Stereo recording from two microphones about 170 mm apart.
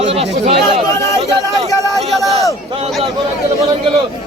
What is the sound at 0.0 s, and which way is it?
Chatter, 35° right (ahead or behind).